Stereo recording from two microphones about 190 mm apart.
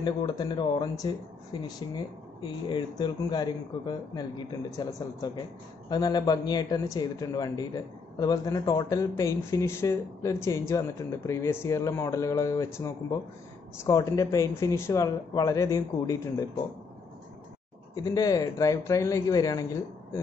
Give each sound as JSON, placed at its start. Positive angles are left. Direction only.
{"t": 0.0, "sound": "a man's voice", "side_deg": 20}
{"t": 18.0, "sound": "a man's voice", "side_deg": 20}